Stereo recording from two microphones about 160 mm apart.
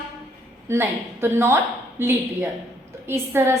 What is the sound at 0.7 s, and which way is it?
A woman's voice, 15° right (ahead or behind).